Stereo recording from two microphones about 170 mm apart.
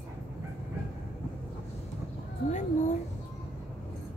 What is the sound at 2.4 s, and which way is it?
Cat, 45° left (ahead or behind).